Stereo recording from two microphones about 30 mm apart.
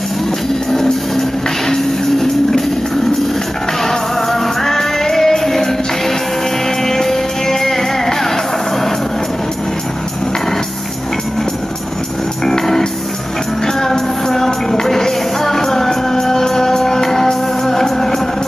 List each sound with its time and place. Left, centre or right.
1.7 s music: centre
3.8 s music: centre
12.4 s music: centre